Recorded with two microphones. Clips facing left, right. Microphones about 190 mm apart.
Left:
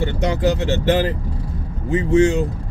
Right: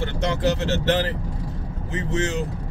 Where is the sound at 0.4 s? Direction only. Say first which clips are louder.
Left 3 dB; 15° left (ahead or behind).